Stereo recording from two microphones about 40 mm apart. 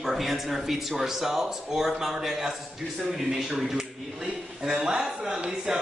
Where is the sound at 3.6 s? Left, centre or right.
Centre.